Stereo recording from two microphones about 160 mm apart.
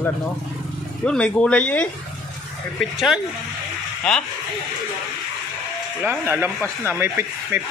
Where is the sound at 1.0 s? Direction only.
5° left (ahead or behind).